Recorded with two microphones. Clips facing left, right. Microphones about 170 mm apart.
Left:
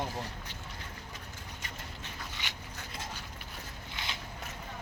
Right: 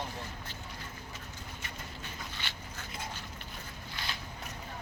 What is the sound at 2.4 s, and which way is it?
Dog, 15° left (ahead or behind).